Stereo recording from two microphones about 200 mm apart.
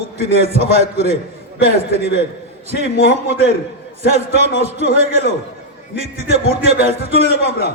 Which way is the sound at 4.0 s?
35° right (ahead or behind).